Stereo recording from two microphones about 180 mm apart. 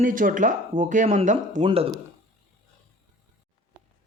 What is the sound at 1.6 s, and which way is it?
Speech, 30° right (ahead or behind).